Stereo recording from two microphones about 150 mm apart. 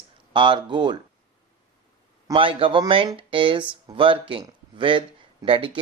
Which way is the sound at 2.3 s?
35° right (ahead or behind).